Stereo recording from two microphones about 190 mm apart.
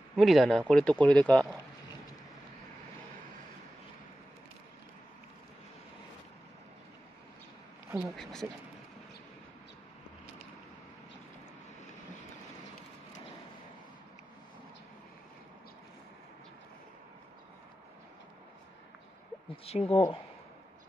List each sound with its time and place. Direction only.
0.1 s speech: centre (ahead or behind)
7.9 s speech: centre (ahead or behind)
19.5 s speech: 30° left (ahead or behind)